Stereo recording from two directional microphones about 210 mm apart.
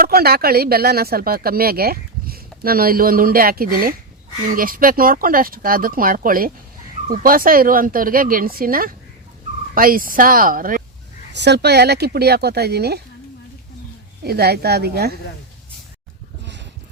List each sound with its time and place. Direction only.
0.0 s a woman's voice: 45° right (ahead or behind)
11.3 s speech: 50° right (ahead or behind)
14.3 s speech: 50° right (ahead or behind)